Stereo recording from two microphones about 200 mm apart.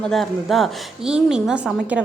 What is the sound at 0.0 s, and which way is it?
A woman's voice, centre (ahead or behind).